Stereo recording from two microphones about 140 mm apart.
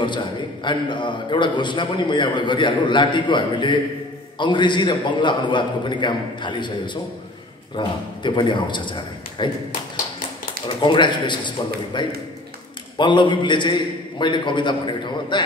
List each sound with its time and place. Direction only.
0.0 s a man's voice: 35° left (ahead or behind)
10.8 s a man's voice: 35° left (ahead or behind)